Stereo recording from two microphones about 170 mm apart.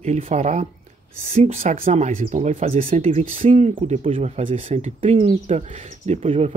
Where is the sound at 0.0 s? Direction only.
40° right (ahead or behind).